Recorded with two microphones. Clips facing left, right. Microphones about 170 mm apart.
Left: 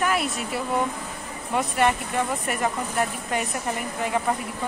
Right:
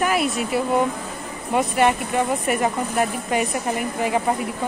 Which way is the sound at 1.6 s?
10° right (ahead or behind).